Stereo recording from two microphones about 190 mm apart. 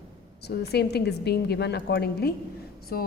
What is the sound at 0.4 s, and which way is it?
A woman's voice, 60° left (ahead or behind).